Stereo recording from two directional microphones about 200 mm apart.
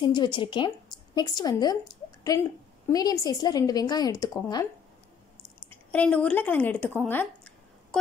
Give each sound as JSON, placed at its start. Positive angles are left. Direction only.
{"t": 0.0, "sound": "speech", "side_deg": 25}
{"t": 5.9, "sound": "speech", "side_deg": 5}
{"t": 7.0, "sound": "a sound", "side_deg": 10}